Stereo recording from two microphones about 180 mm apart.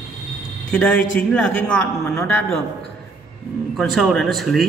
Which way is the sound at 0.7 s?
5° left (ahead or behind).